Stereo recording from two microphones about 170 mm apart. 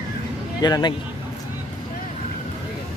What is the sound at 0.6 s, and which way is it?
Speech, 25° left (ahead or behind).